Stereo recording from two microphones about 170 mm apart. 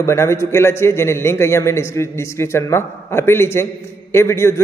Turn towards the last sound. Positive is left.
turn(degrees=15)  # may be behind; listen again after turning